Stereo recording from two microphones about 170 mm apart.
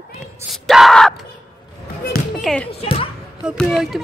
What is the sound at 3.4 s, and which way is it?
Speech, centre (ahead or behind).